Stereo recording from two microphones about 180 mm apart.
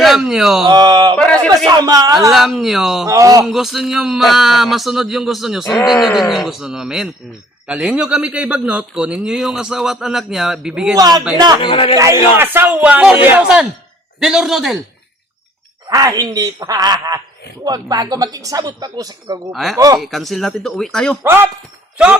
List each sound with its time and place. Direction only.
0.0 s speech: centre (ahead or behind)
0.6 s a sound: 25° right (ahead or behind)
1.5 s speech: 20° right (ahead or behind)
2.3 s a man's voice: centre (ahead or behind)
3.1 s speech: 20° right (ahead or behind)
3.4 s a man's voice: centre (ahead or behind)
10.9 s speech: 20° right (ahead or behind)
11.6 s speech: 30° left (ahead or behind)
12.4 s a man's voice: 10° right (ahead or behind)
15.9 s speech: 20° right (ahead or behind)
20.0 s a man's voice: centre (ahead or behind)
21.2 s speech: 10° right (ahead or behind)